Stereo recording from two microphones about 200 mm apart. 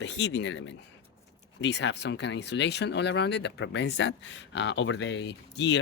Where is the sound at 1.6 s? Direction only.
60° left (ahead or behind).